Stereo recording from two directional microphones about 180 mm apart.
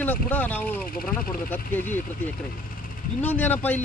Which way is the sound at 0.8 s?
55° left (ahead or behind).